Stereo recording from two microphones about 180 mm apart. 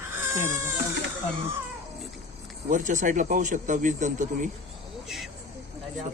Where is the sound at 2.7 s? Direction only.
45° right (ahead or behind).